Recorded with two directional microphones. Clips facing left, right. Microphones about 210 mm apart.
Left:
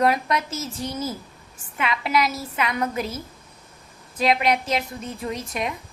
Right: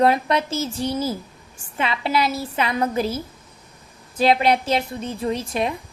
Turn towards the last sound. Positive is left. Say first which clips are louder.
# right 5 dB
turn(degrees=-30)  # may be behind; listen again after turning